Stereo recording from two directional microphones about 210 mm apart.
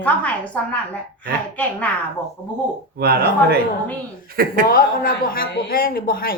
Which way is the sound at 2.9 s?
50° right (ahead or behind).